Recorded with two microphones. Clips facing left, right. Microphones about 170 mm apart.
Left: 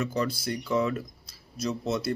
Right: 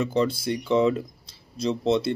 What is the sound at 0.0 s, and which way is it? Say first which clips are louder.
Speech: right 5 dB; 25° right (ahead or behind).